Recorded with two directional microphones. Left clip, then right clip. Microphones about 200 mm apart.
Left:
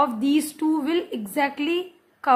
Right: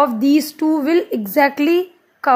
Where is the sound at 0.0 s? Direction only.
30° right (ahead or behind).